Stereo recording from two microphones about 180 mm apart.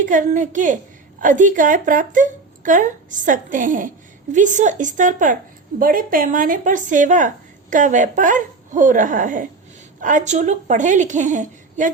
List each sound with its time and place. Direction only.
0.0 s speech: 45° right (ahead or behind)